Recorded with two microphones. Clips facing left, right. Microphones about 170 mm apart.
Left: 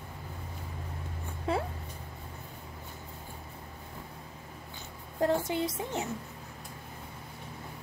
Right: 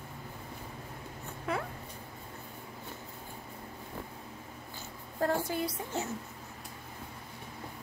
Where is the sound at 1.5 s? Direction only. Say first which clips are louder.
Left 4 dB; 30° left (ahead or behind).